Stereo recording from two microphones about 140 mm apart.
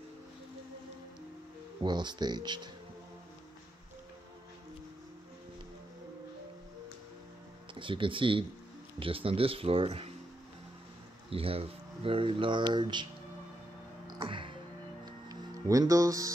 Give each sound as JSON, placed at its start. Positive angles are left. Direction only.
{"t": 1.8, "sound": "speech", "side_deg": -35}
{"t": 7.7, "sound": "speech", "side_deg": -40}
{"t": 11.2, "sound": "speech", "side_deg": -45}
{"t": 14.2, "sound": "music", "side_deg": -35}
{"t": 15.0, "sound": "music", "side_deg": -25}